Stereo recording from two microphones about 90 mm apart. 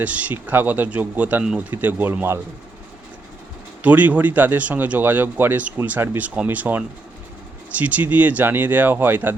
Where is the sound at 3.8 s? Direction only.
20° right (ahead or behind).